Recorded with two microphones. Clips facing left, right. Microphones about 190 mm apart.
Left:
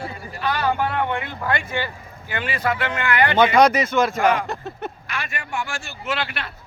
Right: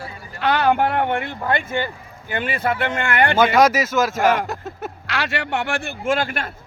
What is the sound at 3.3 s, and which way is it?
Speech, 5° right (ahead or behind).